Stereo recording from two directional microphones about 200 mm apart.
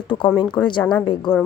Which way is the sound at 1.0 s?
25° left (ahead or behind).